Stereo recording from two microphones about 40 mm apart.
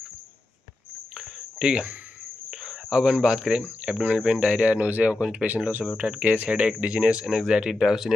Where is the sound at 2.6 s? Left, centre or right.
Right.